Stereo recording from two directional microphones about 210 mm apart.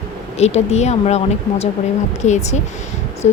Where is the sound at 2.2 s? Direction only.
35° left (ahead or behind).